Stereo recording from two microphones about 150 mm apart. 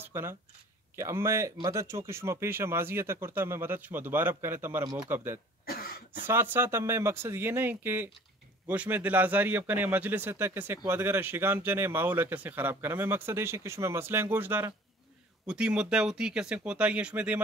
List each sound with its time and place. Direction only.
0.0 s speech: 15° right (ahead or behind)
5.7 s cough: 85° left
6.2 s speech: 15° right (ahead or behind)